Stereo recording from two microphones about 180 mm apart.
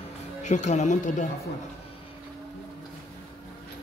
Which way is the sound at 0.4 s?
40° left (ahead or behind).